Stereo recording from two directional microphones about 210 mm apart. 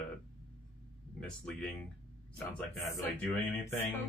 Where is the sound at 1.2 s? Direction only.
5° left (ahead or behind).